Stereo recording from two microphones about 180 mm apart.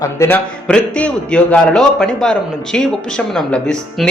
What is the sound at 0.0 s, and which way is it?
Speech, 15° left (ahead or behind).